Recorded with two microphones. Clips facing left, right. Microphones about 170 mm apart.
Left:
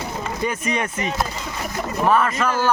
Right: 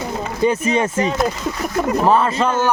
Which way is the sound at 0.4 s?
30° right (ahead or behind).